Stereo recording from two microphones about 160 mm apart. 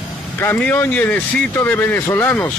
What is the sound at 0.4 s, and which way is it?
Speech, 15° left (ahead or behind).